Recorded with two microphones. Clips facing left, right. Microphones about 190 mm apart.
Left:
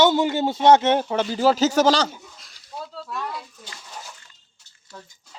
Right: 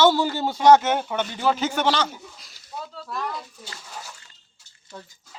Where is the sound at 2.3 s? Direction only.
Centre (ahead or behind).